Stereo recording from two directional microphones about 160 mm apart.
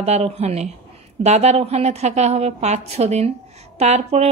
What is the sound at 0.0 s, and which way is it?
Speech, 45° right (ahead or behind).